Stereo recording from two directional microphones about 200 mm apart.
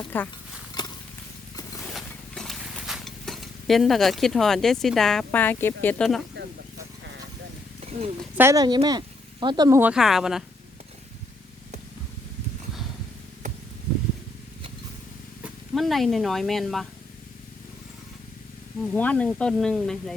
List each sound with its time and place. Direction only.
0.1 s speech: 10° left (ahead or behind)
0.8 s a sound: 20° left (ahead or behind)
1.9 s wild animals: centre (ahead or behind)
8.4 s speech: 15° right (ahead or behind)
15.4 s speech: centre (ahead or behind)
18.9 s speech: 5° left (ahead or behind)